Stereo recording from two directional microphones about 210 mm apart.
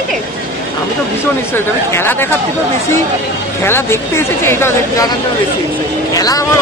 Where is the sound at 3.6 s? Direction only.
10° left (ahead or behind).